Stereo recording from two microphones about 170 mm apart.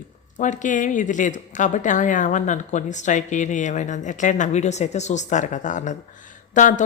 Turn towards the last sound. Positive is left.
turn(degrees=50)  # may be behind; listen again after turning